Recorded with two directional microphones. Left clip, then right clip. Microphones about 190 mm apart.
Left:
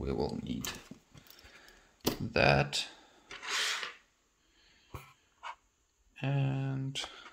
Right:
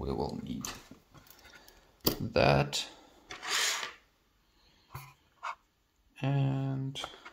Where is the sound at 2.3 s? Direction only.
5° left (ahead or behind).